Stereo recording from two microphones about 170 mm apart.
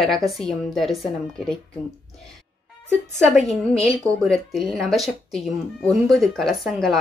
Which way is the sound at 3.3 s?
Centre (ahead or behind).